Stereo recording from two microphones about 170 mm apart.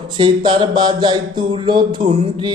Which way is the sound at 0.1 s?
30° right (ahead or behind).